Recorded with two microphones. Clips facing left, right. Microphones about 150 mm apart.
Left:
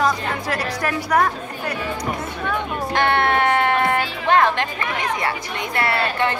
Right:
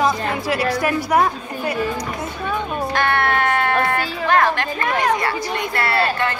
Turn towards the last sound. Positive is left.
turn(degrees=20)  # may be behind; listen again after turning